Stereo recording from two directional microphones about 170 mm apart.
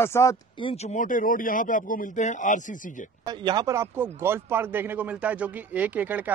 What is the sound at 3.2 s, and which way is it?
Speech, 25° right (ahead or behind).